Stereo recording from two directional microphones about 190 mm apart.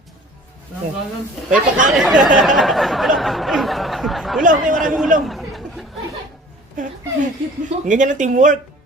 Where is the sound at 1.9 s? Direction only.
Centre (ahead or behind).